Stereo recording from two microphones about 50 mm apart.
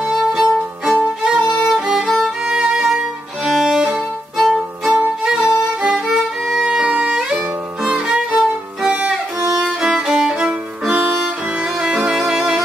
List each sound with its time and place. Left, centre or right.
0.1 s music: centre
0.9 s violin: right
1.4 s violin: left
1.7 s music: centre
2.4 s violin: centre
4.5 s music: centre
5.9 s violin: centre
6.8 s music: right
7.8 s violin: centre
11.8 s music: right
12.1 s music: centre